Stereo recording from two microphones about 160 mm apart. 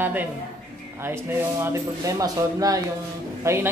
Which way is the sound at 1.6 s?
20° right (ahead or behind).